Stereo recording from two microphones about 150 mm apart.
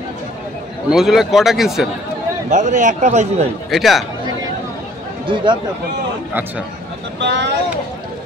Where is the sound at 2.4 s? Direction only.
55° right (ahead or behind).